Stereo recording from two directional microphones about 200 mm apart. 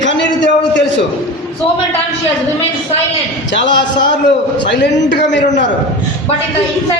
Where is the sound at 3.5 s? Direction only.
65° left (ahead or behind).